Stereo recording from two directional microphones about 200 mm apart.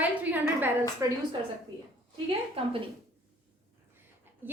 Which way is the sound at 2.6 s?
30° right (ahead or behind).